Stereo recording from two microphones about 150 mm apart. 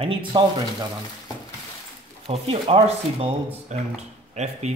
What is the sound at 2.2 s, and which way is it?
Speech, 40° right (ahead or behind).